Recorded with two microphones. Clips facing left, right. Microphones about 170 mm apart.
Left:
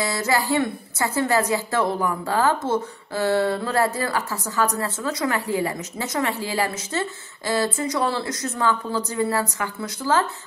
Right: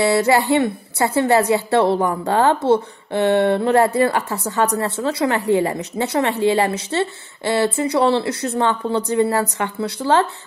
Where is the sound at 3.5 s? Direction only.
25° right (ahead or behind).